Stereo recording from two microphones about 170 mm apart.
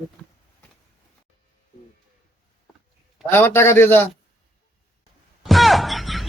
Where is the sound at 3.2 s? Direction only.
10° left (ahead or behind).